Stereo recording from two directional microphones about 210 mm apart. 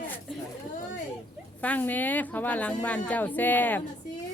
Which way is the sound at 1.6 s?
10° left (ahead or behind).